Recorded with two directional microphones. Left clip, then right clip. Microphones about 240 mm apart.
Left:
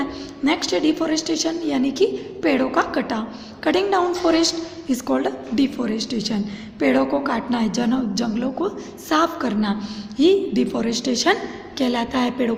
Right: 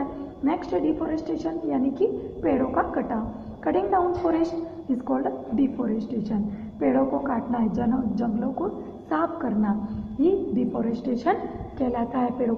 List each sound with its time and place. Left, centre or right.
0.4 s a woman's voice: left